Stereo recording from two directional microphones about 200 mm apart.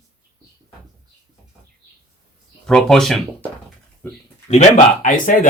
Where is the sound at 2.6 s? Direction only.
Centre (ahead or behind).